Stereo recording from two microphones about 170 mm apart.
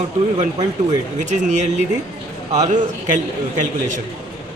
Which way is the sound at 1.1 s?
45° right (ahead or behind).